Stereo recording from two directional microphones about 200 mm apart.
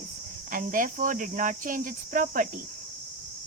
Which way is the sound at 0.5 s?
40° right (ahead or behind).